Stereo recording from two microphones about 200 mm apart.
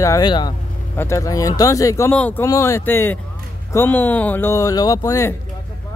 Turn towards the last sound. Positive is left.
turn(degrees=15)  # may be behind; listen again after turning